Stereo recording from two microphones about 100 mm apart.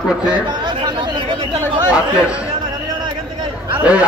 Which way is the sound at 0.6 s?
50° right (ahead or behind).